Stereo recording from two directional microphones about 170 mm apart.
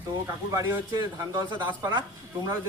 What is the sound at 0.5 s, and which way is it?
A man's voice, 20° right (ahead or behind).